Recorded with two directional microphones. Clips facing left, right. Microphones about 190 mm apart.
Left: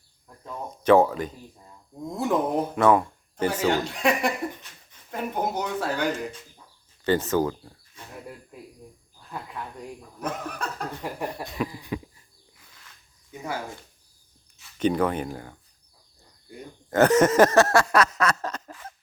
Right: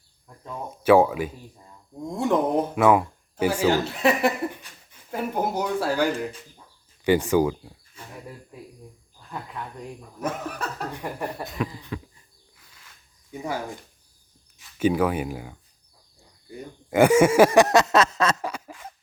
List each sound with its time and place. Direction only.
0.3 s speech: centre (ahead or behind)
9.3 s speech: 5° left (ahead or behind)
11.7 s a sound: 10° left (ahead or behind)
14.8 s speech: 5° right (ahead or behind)
16.9 s speech: 10° right (ahead or behind)
18.4 s a sound: 10° right (ahead or behind)